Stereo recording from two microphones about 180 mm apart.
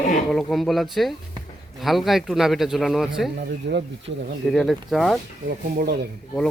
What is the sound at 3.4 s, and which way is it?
Speech, 75° right (ahead or behind).